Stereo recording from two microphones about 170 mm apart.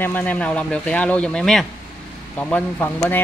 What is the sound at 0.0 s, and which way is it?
Speech, 10° left (ahead or behind).